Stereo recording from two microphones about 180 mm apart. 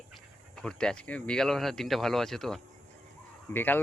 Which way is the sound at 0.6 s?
5° left (ahead or behind).